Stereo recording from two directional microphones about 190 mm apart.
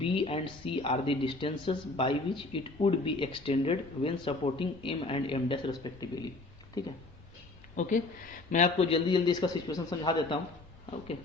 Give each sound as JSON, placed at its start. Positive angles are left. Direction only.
{"t": 0.0, "sound": "speech", "side_deg": 30}
{"t": 7.8, "sound": "speech", "side_deg": 45}